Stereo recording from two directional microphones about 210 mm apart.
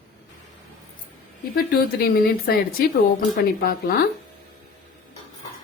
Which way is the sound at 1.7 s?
45° left (ahead or behind).